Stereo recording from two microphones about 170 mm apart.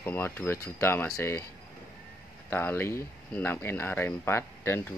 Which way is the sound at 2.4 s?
10° left (ahead or behind).